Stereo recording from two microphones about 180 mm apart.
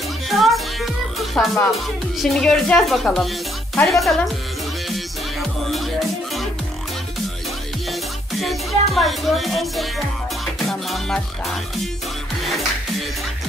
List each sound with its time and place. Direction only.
0.3 s music: centre (ahead or behind)
1.3 s speech: centre (ahead or behind)
5.7 s music: centre (ahead or behind)
7.9 s music: centre (ahead or behind)